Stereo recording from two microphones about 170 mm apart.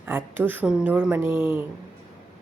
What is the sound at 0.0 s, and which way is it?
A woman's voice, 10° right (ahead or behind).